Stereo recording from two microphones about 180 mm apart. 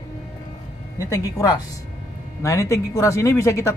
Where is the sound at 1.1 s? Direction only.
20° left (ahead or behind).